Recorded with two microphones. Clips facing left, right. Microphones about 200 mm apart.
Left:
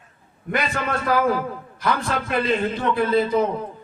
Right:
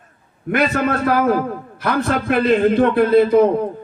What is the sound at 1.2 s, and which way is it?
A man's voice, 50° right (ahead or behind).